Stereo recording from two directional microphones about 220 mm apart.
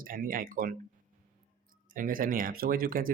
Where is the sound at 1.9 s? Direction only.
40° right (ahead or behind).